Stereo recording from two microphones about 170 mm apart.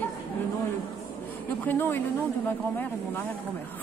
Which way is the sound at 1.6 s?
10° left (ahead or behind).